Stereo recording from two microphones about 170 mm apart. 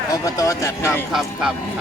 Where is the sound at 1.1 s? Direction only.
5° right (ahead or behind).